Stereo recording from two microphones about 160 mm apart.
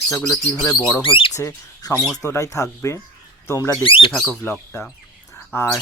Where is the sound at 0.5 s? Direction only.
5° left (ahead or behind).